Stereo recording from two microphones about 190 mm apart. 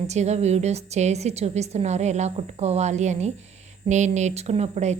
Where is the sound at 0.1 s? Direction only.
35° right (ahead or behind).